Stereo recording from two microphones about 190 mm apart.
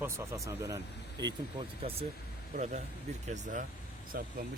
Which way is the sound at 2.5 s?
40° right (ahead or behind).